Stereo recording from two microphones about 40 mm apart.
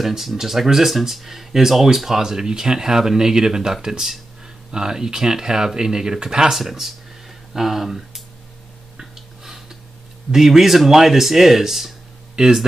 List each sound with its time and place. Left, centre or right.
0.0 s speech: centre
6.5 s speech: centre
8.9 s a sound: centre
10.3 s speech: centre
12.4 s speech: centre